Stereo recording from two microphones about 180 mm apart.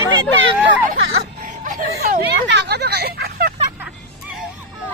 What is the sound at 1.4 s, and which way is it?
Speech, 45° right (ahead or behind).